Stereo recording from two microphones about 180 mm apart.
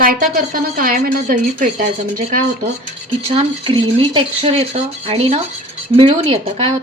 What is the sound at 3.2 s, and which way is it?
A woman's voice, 35° right (ahead or behind).